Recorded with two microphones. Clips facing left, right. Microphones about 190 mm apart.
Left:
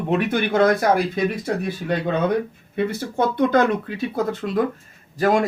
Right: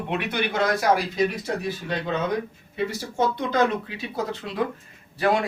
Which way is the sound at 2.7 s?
55° left (ahead or behind).